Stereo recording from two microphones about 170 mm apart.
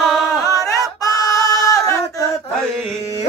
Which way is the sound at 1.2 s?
20° left (ahead or behind).